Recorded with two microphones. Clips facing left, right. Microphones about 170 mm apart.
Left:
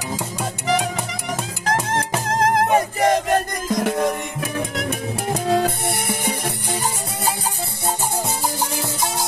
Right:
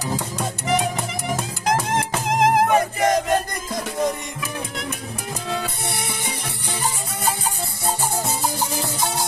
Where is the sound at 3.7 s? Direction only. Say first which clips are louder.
Left 5 dB; 70° left (ahead or behind).